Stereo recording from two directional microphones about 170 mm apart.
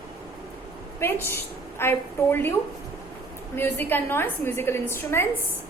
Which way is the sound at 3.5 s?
10° left (ahead or behind).